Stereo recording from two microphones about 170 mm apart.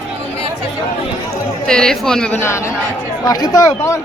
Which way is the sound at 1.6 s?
5° left (ahead or behind).